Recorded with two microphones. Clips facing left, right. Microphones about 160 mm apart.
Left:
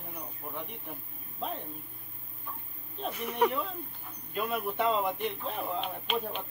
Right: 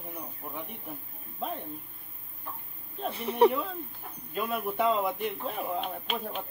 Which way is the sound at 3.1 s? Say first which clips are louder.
Right 6 dB; 30° right (ahead or behind).